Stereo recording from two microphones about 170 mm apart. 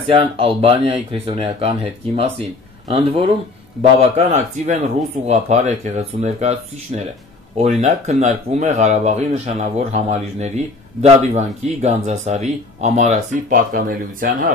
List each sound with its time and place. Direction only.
0.1 s speech: 35° right (ahead or behind); by 14.5 s 55° right (ahead or behind)